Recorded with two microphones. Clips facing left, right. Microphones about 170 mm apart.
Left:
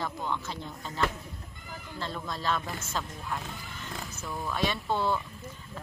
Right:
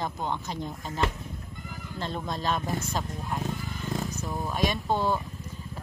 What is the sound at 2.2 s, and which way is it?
Speech, 20° right (ahead or behind).